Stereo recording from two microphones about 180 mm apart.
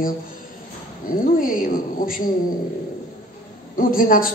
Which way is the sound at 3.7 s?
50° left (ahead or behind).